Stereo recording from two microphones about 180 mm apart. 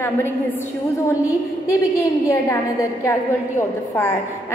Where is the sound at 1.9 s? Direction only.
15° left (ahead or behind).